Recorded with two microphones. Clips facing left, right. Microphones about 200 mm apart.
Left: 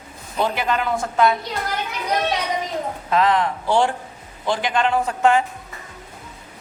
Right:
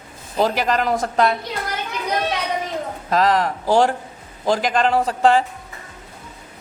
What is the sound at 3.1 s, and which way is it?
A woman's voice, 40° right (ahead or behind).